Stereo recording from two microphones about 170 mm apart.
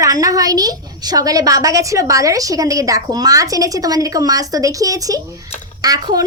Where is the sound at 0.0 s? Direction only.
20° right (ahead or behind).